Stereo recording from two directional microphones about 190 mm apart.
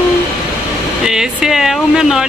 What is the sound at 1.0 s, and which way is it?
Speech, 5° right (ahead or behind).